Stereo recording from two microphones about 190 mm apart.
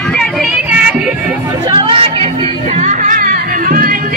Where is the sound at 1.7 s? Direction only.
25° right (ahead or behind).